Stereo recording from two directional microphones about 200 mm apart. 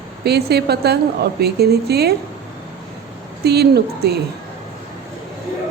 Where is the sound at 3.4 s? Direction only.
55° right (ahead or behind).